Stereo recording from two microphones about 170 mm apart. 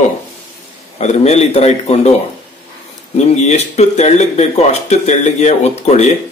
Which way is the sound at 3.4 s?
40° left (ahead or behind).